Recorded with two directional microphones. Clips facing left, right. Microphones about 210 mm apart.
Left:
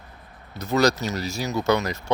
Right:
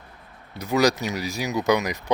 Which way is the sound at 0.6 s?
15° right (ahead or behind).